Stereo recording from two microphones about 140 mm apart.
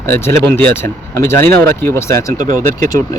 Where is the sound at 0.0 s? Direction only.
15° left (ahead or behind).